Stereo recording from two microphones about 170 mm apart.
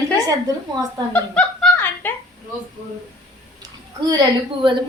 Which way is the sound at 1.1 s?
10° left (ahead or behind).